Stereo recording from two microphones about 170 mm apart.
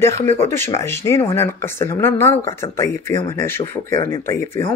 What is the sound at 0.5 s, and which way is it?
Speech, 15° left (ahead or behind).